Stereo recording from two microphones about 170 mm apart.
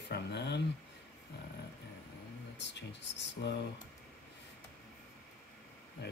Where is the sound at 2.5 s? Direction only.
90° left.